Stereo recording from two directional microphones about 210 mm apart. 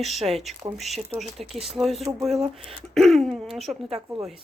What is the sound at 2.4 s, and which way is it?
Speech, 25° right (ahead or behind).